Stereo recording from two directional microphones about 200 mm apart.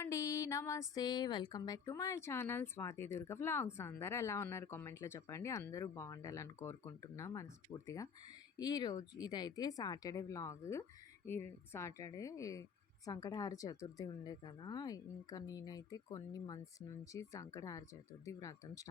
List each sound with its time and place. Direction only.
0.0 s speech: 15° left (ahead or behind)